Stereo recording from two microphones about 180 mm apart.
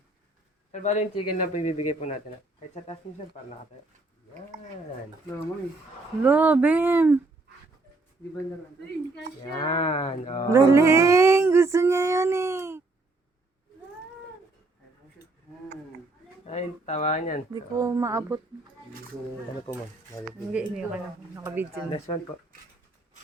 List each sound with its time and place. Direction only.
0.7 s cattle: 40° left (ahead or behind)
6.2 s a woman's voice: 10° right (ahead or behind)
9.4 s cattle: 25° left (ahead or behind)
10.5 s a sound: 15° right (ahead or behind)
16.5 s cattle: 40° left (ahead or behind)
17.5 s a woman's voice: 20° right (ahead or behind)
20.5 s a woman's voice: 5° right (ahead or behind)
21.8 s cattle: 30° left (ahead or behind)